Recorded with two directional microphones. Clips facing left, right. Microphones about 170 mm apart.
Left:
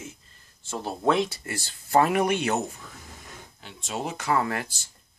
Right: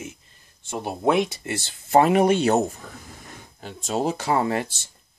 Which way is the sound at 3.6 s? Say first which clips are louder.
Right 8 dB; 40° right (ahead or behind).